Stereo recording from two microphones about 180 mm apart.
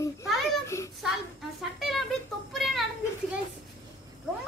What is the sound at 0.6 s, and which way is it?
Speech, 15° left (ahead or behind).